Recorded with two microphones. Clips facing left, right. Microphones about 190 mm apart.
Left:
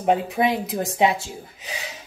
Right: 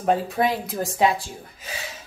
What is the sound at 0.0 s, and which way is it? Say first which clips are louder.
Speech: left 1 dB; 20° left (ahead or behind).